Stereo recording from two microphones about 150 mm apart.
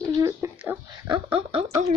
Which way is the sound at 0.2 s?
20° right (ahead or behind).